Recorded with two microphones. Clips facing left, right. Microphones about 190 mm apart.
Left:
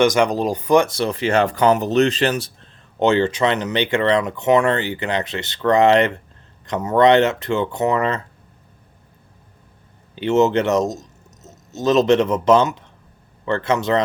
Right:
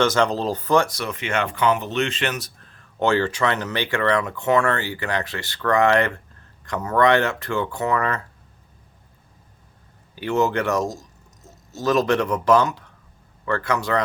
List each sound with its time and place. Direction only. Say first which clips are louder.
0.0 s speech: left 3 dB; 15° left (ahead or behind)
10.2 s speech: left 5 dB; 20° left (ahead or behind)